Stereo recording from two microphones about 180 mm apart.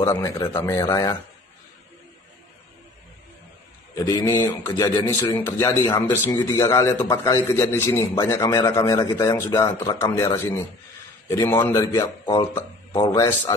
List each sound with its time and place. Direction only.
0.0 s speech: 20° left (ahead or behind)
4.0 s a man's voice: 15° left (ahead or behind)